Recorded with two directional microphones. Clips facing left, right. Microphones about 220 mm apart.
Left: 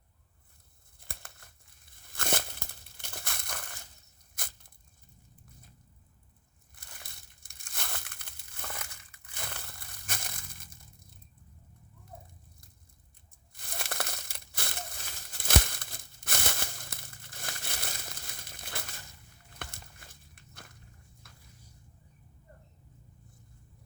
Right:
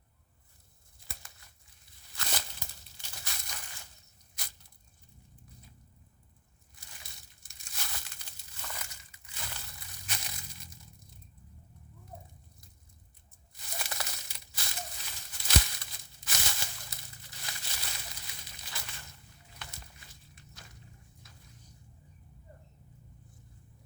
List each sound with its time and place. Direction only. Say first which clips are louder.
0.9 s crumpling: left 4 dB; 55° left (ahead or behind)
4.4 s a sound: left 6 dB; 50° left (ahead or behind)
6.7 s crushing: left 3 dB; 55° left (ahead or behind)
13.5 s crushing: left 2 dB; 55° left (ahead or behind)
19.5 s walk: left 5 dB; 55° left (ahead or behind)
21.2 s a sound: left 1 dB; 55° left (ahead or behind)